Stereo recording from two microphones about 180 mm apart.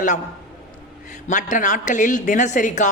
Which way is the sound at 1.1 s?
45° left (ahead or behind).